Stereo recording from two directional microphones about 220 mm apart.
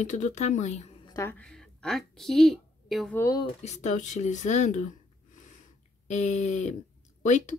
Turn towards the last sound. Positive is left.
turn(degrees=35)  # may be behind; listen again after turning